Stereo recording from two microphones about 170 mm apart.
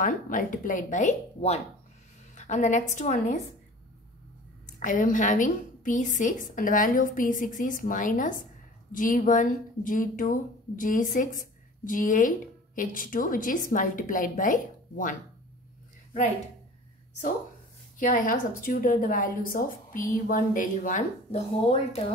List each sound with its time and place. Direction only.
0.0 s a woman's voice: 50° left (ahead or behind)
4.6 s a woman's voice: 50° left (ahead or behind)
17.9 s a woman's voice: 50° left (ahead or behind)